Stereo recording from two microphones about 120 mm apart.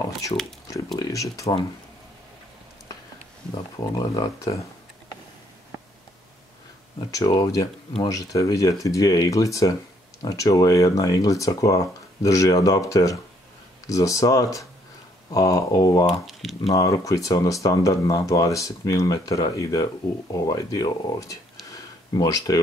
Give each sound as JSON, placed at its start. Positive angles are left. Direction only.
{"t": 0.0, "sound": "speech", "side_deg": 25}
{"t": 3.7, "sound": "speech", "side_deg": 35}
{"t": 7.1, "sound": "speech", "side_deg": 30}
{"t": 16.1, "sound": "speech", "side_deg": 0}
{"t": 16.7, "sound": "speech", "side_deg": 25}
{"t": 21.6, "sound": "a sound", "side_deg": 30}